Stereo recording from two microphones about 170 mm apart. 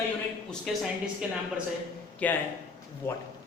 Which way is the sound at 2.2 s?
10° left (ahead or behind).